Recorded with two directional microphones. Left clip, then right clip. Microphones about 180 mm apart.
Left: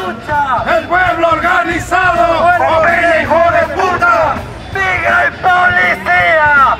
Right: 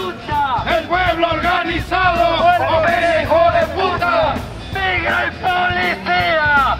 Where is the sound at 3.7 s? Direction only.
25° right (ahead or behind).